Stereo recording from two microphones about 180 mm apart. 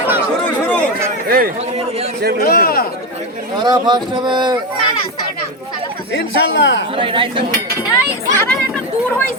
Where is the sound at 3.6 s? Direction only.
25° right (ahead or behind).